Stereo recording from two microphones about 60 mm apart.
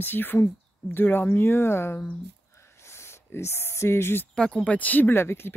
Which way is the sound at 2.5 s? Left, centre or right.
Left.